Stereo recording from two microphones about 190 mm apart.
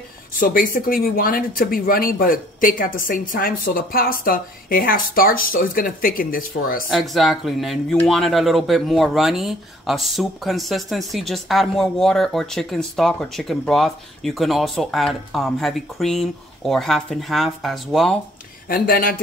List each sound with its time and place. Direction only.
0.4 s speech: 45° left (ahead or behind)
6.9 s speech: centre (ahead or behind)
18.7 s speech: 50° left (ahead or behind)